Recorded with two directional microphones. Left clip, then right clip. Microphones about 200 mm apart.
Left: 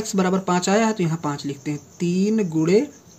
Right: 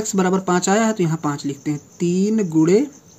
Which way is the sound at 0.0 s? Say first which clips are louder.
Right 2 dB; 25° right (ahead or behind).